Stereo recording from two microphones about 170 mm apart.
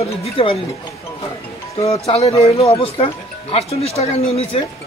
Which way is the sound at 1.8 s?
35° left (ahead or behind).